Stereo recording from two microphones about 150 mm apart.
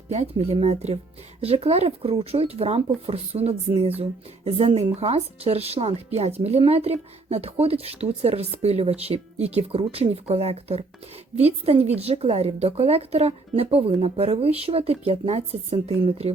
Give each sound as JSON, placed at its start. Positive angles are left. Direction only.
{"t": 0.1, "sound": "speech", "side_deg": -45}